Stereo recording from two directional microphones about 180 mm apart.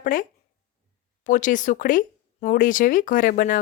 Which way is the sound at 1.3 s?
45° left (ahead or behind).